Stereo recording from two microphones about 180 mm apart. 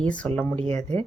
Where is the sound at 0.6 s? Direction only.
40° right (ahead or behind).